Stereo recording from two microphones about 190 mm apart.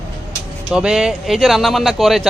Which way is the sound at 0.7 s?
5° right (ahead or behind).